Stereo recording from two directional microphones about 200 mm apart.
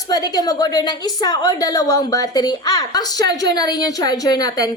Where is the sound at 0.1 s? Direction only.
20° left (ahead or behind).